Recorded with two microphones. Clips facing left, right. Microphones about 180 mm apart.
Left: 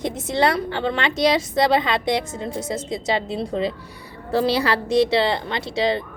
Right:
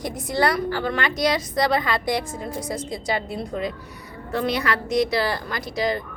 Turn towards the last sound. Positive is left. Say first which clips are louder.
# left 3 dB
turn(degrees=25)  # may be behind; listen again after turning